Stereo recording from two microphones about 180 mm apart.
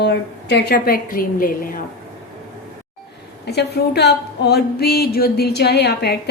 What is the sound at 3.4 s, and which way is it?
Speech, 65° left (ahead or behind).